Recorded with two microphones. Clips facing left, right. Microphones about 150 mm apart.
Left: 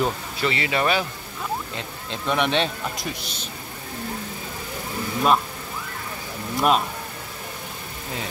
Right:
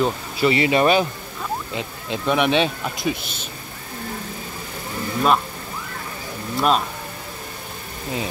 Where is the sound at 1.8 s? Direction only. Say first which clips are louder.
Right 5 dB; 10° right (ahead or behind).